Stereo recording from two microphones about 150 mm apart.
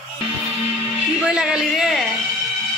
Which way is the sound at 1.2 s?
5° right (ahead or behind).